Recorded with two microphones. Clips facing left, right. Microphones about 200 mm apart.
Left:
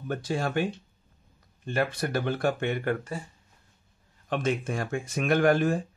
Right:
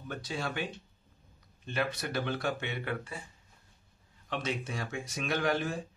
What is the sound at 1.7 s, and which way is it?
Speech, 50° left (ahead or behind).